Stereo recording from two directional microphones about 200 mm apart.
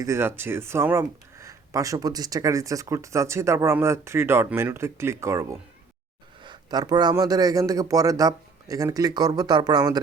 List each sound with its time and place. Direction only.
0.0 s a man's voice: 10° right (ahead or behind)